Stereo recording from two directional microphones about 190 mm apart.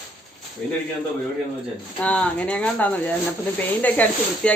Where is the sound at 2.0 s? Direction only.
5° left (ahead or behind).